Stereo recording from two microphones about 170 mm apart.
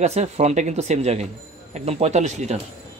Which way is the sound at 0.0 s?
40° right (ahead or behind).